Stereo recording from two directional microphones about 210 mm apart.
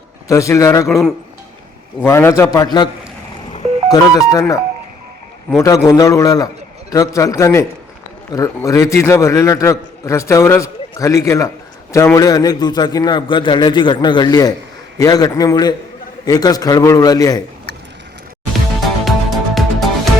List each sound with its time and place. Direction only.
0.3 s a man's voice: 15° left (ahead or behind)
0.9 s speech: centre (ahead or behind)
2.0 s a man's voice: 10° left (ahead or behind)
19.0 s music: centre (ahead or behind)